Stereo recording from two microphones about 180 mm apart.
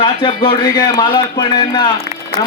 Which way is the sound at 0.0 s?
30° left (ahead or behind).